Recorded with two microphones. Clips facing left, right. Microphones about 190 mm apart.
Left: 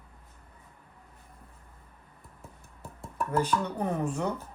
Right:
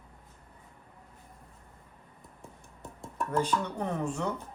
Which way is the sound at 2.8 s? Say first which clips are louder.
Left 1 dB; 5° left (ahead or behind).